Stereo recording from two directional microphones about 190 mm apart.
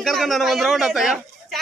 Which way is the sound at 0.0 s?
Centre (ahead or behind).